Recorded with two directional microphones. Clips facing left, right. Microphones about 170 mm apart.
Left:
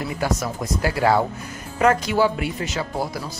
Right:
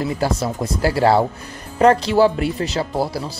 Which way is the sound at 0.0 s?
30° right (ahead or behind).